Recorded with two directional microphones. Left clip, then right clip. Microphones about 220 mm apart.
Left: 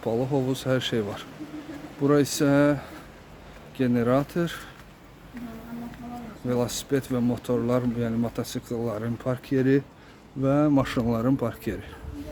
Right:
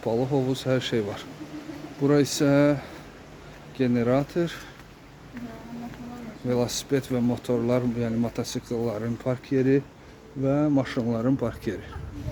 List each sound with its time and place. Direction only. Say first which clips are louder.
0.0 s speech: right 1 dB; 10° left (ahead or behind)
6.5 s speech: right 1 dB; 10° left (ahead or behind)